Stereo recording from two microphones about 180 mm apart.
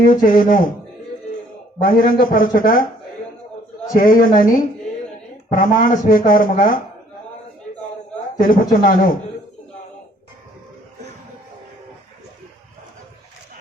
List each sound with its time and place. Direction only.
0.0 s speech: 50° left (ahead or behind)
1.8 s speech: 50° left (ahead or behind)
3.9 s speech: 50° left (ahead or behind)
8.4 s speech: 50° left (ahead or behind)